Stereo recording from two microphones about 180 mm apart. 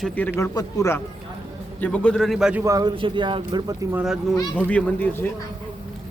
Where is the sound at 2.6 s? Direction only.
20° right (ahead or behind).